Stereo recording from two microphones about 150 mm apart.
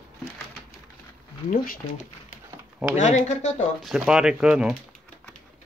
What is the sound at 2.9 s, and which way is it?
Speech, 50° left (ahead or behind).